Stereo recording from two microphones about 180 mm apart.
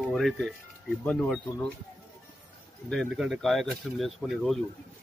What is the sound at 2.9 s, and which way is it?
Speech, centre (ahead or behind).